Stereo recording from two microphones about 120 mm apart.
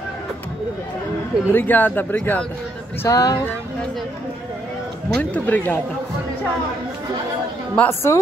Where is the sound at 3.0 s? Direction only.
30° left (ahead or behind).